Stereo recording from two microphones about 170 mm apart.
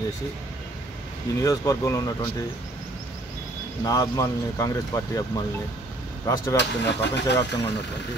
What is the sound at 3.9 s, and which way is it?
Speech, 20° left (ahead or behind).